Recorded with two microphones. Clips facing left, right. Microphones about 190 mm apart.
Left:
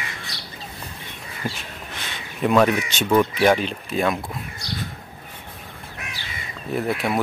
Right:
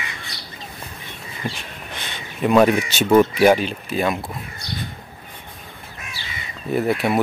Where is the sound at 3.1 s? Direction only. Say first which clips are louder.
Right 4 dB; 20° right (ahead or behind).